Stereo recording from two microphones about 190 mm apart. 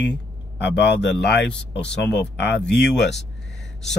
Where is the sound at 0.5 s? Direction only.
65° left (ahead or behind).